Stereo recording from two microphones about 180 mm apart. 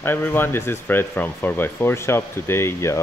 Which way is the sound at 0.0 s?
10° left (ahead or behind).